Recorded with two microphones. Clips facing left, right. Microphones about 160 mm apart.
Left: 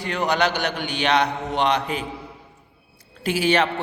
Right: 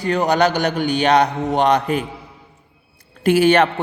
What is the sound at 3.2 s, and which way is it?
Speech, 55° right (ahead or behind).